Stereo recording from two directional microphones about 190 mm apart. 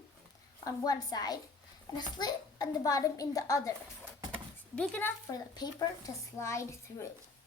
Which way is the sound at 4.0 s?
10° right (ahead or behind).